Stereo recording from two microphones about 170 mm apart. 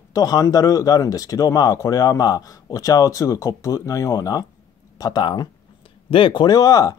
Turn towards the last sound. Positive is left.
turn(degrees=20)  # may be behind; listen again after turning